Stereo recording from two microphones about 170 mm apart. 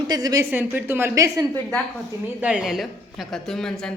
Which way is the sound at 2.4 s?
5° right (ahead or behind).